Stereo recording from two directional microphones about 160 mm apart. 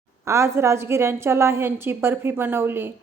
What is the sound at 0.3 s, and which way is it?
A woman's voice, 15° right (ahead or behind).